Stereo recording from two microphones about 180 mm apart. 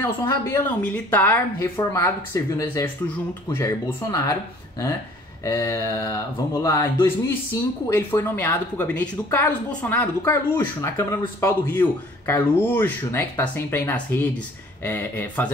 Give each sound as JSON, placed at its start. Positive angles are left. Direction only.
{"t": 0.0, "sound": "speech", "side_deg": 10}